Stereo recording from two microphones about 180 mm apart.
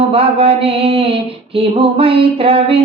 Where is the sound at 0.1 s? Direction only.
30° right (ahead or behind).